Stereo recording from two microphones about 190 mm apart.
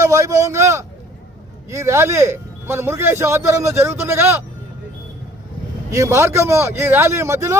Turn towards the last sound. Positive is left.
turn(degrees=-15)  # may be behind; listen again after turning